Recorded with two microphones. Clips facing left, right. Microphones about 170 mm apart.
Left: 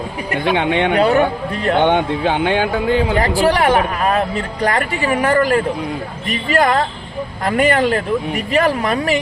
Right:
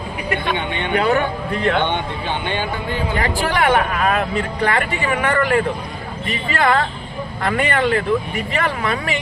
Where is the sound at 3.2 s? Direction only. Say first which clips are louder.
Left 5 dB; 40° left (ahead or behind).